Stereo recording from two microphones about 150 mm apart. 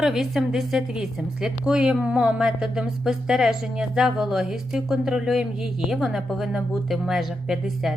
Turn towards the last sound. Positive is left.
turn(degrees=0)  # may be behind; listen again after turning